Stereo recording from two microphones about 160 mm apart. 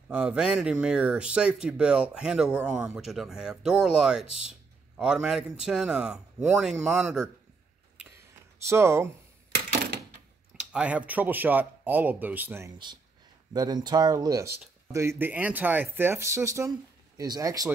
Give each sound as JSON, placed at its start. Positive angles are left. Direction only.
{"t": 0.1, "sound": "a man's voice", "side_deg": -5}
{"t": 8.6, "sound": "speech", "side_deg": -15}
{"t": 10.7, "sound": "speech", "side_deg": -10}
{"t": 13.5, "sound": "speech", "side_deg": -25}